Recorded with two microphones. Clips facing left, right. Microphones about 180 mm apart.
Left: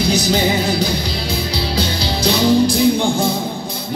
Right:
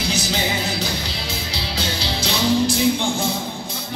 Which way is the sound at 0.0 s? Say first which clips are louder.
Left 7 dB; 40° left (ahead or behind).